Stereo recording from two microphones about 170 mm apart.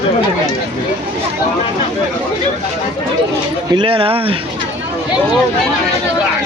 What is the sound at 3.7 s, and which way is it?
Speech, 30° right (ahead or behind).